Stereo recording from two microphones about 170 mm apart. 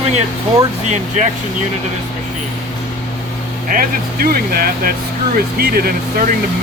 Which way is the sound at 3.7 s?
60° right (ahead or behind).